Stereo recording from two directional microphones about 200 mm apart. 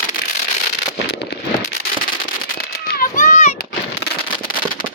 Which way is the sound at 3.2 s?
35° left (ahead or behind).